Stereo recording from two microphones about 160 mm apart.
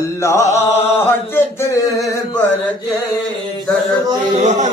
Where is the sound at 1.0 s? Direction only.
15° left (ahead or behind).